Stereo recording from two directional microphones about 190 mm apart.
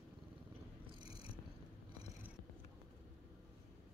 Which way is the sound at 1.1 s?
30° left (ahead or behind).